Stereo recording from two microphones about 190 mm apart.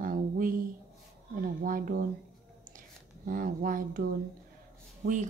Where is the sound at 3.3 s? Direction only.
50° right (ahead or behind).